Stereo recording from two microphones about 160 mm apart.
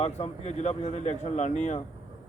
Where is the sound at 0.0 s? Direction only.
40° left (ahead or behind).